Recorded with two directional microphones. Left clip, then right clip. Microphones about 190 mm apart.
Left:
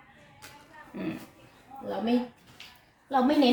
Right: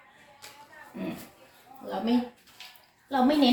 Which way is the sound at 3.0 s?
45° left (ahead or behind).